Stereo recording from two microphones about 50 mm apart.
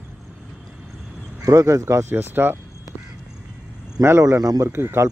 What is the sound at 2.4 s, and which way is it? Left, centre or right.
Speech, right.